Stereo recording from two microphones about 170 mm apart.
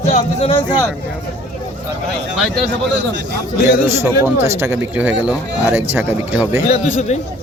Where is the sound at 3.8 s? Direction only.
15° right (ahead or behind).